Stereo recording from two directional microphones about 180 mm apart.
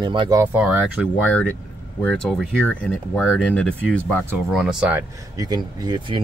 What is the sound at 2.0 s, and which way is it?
Speech, 5° left (ahead or behind).